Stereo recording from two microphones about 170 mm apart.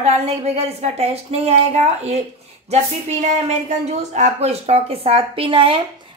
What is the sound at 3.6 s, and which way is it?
A woman's voice, 45° right (ahead or behind).